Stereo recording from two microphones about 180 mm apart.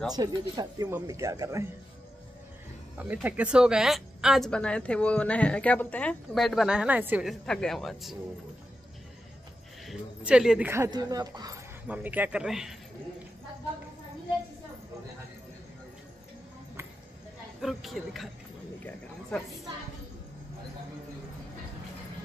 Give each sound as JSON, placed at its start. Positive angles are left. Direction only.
{"t": 0.1, "sound": "speech", "side_deg": -20}
{"t": 3.0, "sound": "speech", "side_deg": -10}
{"t": 7.4, "sound": "speech", "side_deg": 5}
{"t": 9.8, "sound": "speech", "side_deg": -5}
{"t": 10.7, "sound": "speech", "side_deg": -20}
{"t": 11.9, "sound": "speech", "side_deg": -10}
{"t": 17.6, "sound": "speech", "side_deg": 0}